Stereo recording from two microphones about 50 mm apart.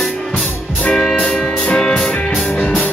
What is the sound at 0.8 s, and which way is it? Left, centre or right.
Music, left.